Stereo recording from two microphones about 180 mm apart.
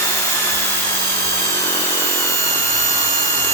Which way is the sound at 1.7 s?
15° left (ahead or behind).